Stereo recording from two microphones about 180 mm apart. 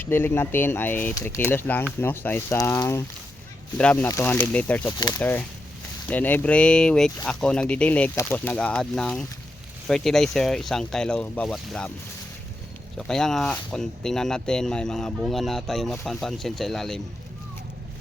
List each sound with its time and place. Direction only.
0.0 s speech: 10° left (ahead or behind)
4.9 s speech: 25° left (ahead or behind)
6.1 s speech: 10° left (ahead or behind)
13.0 s speech: 5° left (ahead or behind)